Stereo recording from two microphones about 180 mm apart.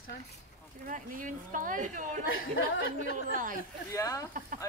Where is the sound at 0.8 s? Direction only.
45° right (ahead or behind).